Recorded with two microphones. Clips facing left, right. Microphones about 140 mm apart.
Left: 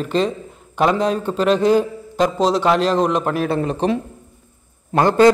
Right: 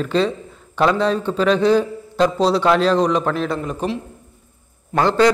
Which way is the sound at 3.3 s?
60° left (ahead or behind).